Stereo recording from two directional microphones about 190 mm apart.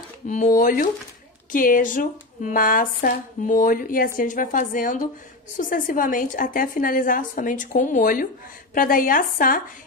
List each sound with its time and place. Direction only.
0.3 s a woman's voice: 40° left (ahead or behind)